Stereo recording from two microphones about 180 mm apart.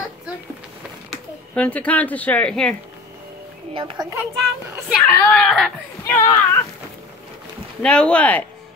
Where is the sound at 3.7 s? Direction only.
30° right (ahead or behind).